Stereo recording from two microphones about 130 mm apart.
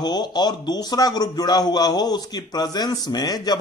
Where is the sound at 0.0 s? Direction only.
35° left (ahead or behind).